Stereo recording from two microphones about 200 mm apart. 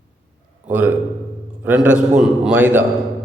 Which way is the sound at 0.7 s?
10° right (ahead or behind).